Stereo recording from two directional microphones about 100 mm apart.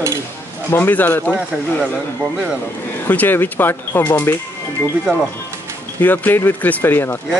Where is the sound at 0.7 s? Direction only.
20° left (ahead or behind).